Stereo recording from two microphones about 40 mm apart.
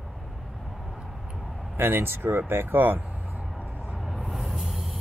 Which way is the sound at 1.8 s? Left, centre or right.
Right.